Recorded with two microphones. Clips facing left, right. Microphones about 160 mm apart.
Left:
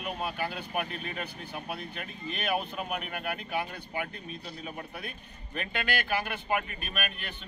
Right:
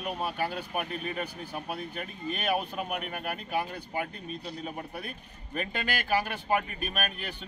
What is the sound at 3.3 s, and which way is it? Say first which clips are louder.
Speech: right 2 dB; 40° right (ahead or behind).